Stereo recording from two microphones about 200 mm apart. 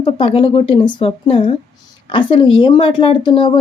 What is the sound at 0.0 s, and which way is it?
Speech, 25° left (ahead or behind).